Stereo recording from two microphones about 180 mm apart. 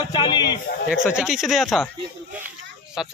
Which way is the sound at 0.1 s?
25° left (ahead or behind).